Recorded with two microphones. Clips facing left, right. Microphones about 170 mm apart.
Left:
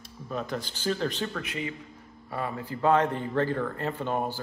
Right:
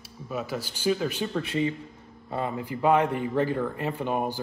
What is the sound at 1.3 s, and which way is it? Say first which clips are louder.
Speech: right 7 dB; 30° right (ahead or behind).